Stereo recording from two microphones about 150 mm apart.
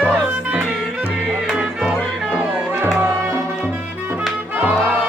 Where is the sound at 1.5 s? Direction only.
5° right (ahead or behind).